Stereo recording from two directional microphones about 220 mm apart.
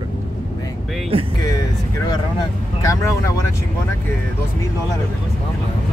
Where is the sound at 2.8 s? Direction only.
15° left (ahead or behind).